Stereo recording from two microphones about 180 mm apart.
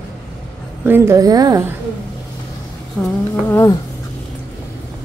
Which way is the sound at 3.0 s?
10° left (ahead or behind).